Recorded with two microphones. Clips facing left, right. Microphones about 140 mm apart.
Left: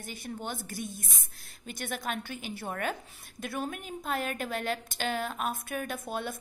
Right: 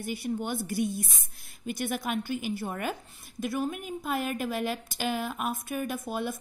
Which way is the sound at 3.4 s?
Centre (ahead or behind).